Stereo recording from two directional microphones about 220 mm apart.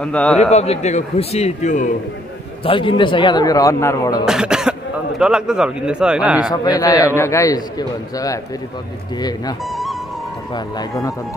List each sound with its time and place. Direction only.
0.0 s a man's voice: 5° left (ahead or behind)
0.4 s a man's voice: 30° left (ahead or behind); by 4.2 s 15° left (ahead or behind)
4.3 s a man's voice: 5° right (ahead or behind)
6.5 s a man's voice: 15° left (ahead or behind)
9.7 s music: centre (ahead or behind)
10.5 s a man's voice: 15° left (ahead or behind)